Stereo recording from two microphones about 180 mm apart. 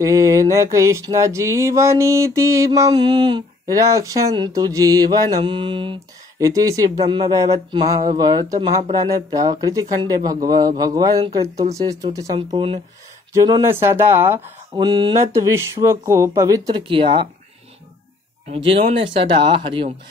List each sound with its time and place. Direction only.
0.0 s a sound: 20° right (ahead or behind)
6.4 s speech: 20° right (ahead or behind)
12.4 s speech: 30° right (ahead or behind)
13.3 s a sound: 20° right (ahead or behind)
14.8 s speech: 25° right (ahead or behind)
18.5 s speech: 30° right (ahead or behind)